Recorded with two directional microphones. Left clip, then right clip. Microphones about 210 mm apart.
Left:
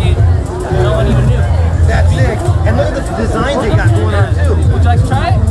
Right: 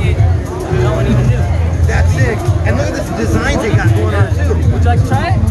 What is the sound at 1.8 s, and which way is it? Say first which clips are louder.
Music: left 1 dB; 10° left (ahead or behind).